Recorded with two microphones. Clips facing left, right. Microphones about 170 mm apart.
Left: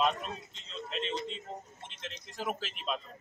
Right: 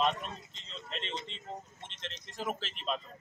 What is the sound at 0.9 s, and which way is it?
A man's voice, 5° left (ahead or behind).